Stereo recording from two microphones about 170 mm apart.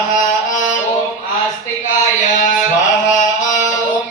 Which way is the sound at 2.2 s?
50° left (ahead or behind).